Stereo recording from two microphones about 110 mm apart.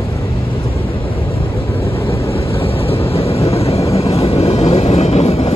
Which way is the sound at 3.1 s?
60° left (ahead or behind).